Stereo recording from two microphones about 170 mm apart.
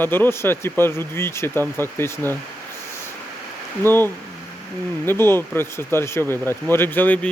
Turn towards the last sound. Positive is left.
turn(degrees=10)  # may be behind; listen again after turning